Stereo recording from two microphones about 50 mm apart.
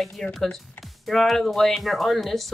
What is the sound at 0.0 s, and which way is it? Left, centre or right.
Speech, centre.